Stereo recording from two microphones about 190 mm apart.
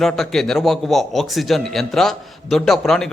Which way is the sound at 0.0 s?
Centre (ahead or behind).